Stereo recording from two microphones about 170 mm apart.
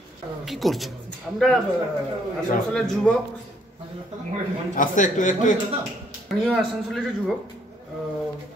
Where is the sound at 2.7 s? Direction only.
5° left (ahead or behind).